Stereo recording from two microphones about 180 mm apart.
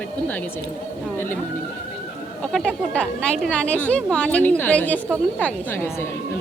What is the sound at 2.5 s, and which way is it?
A woman's voice, 5° left (ahead or behind).